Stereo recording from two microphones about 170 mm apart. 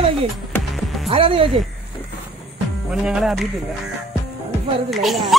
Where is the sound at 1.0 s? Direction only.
35° right (ahead or behind).